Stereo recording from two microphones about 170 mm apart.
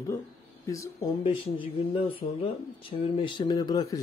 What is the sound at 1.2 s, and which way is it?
Speech, 30° left (ahead or behind).